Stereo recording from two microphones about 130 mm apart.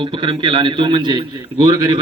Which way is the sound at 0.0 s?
40° right (ahead or behind).